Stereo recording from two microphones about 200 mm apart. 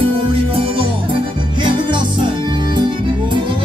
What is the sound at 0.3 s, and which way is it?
Music, 25° right (ahead or behind).